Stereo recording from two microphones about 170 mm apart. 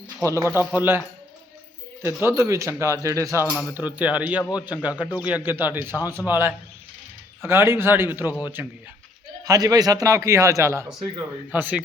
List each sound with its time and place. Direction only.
0.2 s a man's voice: 20° right (ahead or behind)
2.2 s a man's voice: 15° right (ahead or behind)